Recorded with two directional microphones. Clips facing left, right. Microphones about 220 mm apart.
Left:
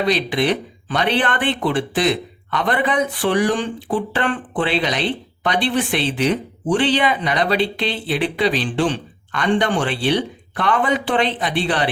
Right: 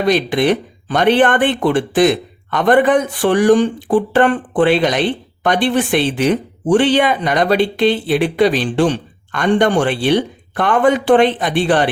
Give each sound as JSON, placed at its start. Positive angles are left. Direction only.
{"t": 0.0, "sound": "speech", "side_deg": -45}